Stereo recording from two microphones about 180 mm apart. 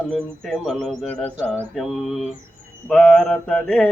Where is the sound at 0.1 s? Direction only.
5° left (ahead or behind).